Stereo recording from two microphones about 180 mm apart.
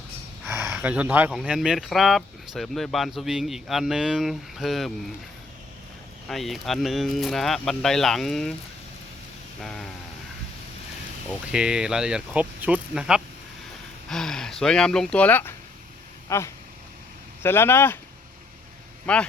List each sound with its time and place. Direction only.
0.4 s a sound: 15° right (ahead or behind)
0.7 s speech: 10° right (ahead or behind)
6.2 s speech: centre (ahead or behind)
9.6 s a sound: 5° left (ahead or behind)
11.3 s speech: 5° right (ahead or behind); by 17.9 s 15° left (ahead or behind)
19.1 s speech: 5° left (ahead or behind)